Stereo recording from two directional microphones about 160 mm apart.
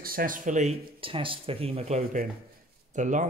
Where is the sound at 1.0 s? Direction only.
35° right (ahead or behind).